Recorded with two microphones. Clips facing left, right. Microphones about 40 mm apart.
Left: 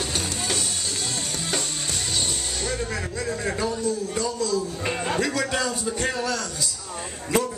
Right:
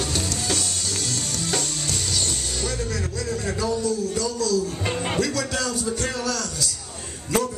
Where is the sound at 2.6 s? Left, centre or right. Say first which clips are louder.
Even; centre.